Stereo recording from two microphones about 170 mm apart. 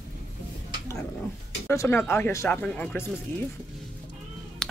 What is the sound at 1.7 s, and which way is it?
Speech, 15° left (ahead or behind).